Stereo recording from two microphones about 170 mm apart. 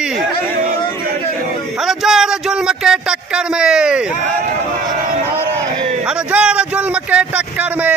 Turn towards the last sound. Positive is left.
turn(degrees=-10)  # may be behind; listen again after turning